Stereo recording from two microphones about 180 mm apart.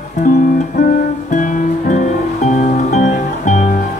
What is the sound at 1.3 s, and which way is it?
Music, 45° left (ahead or behind).